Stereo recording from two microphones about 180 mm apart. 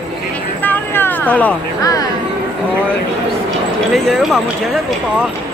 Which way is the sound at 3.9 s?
Centre (ahead or behind).